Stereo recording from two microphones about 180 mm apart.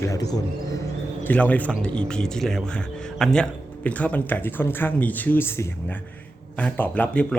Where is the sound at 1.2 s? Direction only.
10° left (ahead or behind).